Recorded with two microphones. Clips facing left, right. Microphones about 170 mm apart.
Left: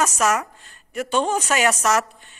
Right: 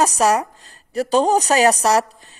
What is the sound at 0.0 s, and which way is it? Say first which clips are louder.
A woman's voice: right 4 dB; 35° right (ahead or behind).